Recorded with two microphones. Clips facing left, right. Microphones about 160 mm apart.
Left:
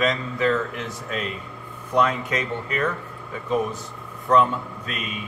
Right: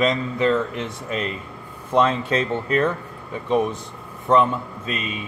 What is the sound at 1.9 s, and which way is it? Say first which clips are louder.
Speech: right 3 dB; 25° right (ahead or behind).